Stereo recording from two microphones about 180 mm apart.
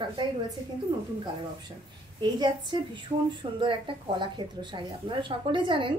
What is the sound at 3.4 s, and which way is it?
A woman's voice, 25° right (ahead or behind).